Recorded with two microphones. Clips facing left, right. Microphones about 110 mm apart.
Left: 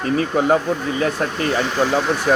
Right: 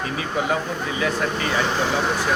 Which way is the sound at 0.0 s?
45° left (ahead or behind).